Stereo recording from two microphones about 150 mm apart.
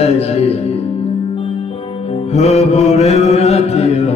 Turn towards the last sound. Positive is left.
turn(degrees=45)  # may be behind; listen again after turning